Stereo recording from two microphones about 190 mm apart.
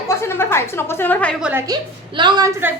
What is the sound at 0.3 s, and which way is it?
A woman's voice, 15° left (ahead or behind).